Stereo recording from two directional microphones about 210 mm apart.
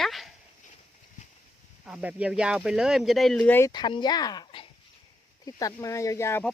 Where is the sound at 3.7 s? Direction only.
20° left (ahead or behind).